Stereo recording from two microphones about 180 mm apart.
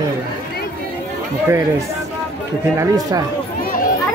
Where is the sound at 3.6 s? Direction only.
50° left (ahead or behind).